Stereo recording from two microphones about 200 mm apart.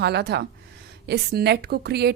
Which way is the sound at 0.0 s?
55° right (ahead or behind).